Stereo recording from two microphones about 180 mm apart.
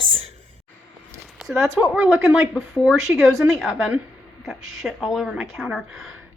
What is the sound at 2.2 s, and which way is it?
Speech, centre (ahead or behind).